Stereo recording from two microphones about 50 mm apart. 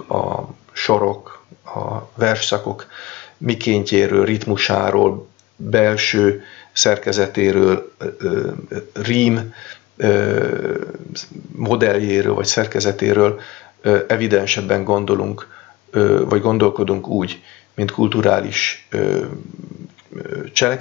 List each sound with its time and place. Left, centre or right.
0.1 s dog: centre
5.7 s speech: centre